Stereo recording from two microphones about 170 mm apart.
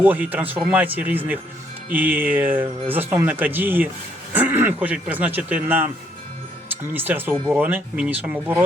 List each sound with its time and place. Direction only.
0.0 s speech: 10° right (ahead or behind)